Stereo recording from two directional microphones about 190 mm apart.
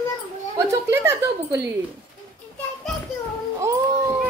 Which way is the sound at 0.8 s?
15° right (ahead or behind).